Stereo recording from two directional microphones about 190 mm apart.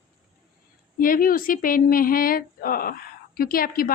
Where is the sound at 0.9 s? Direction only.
45° left (ahead or behind).